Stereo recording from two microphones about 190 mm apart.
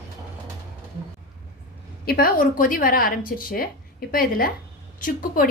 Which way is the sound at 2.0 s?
50° left (ahead or behind).